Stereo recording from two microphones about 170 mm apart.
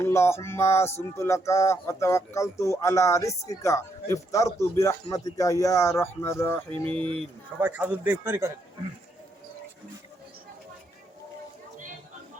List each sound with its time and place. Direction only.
0.0 s speech: 15° left (ahead or behind)
7.6 s speech: 10° right (ahead or behind)